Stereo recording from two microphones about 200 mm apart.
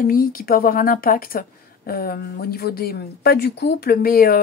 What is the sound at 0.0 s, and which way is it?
A woman's voice, 45° left (ahead or behind).